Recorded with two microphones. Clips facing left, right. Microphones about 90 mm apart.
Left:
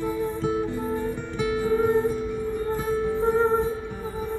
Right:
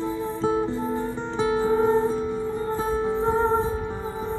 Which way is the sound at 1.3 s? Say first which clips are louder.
Right 2 dB; 30° right (ahead or behind).